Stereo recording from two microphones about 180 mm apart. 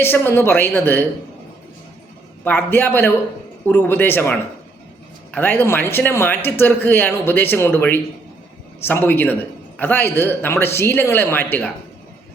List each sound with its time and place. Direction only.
0.0 s speech: 10° left (ahead or behind)
2.4 s speech: 10° left (ahead or behind)